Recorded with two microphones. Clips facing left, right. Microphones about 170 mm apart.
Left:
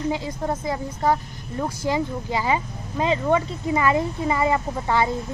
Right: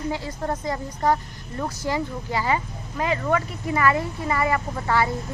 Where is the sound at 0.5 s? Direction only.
5° left (ahead or behind).